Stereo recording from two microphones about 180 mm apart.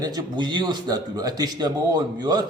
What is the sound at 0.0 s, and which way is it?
Speech, 20° right (ahead or behind).